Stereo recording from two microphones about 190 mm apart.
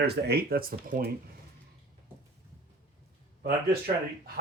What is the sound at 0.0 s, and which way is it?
Speech, 55° right (ahead or behind).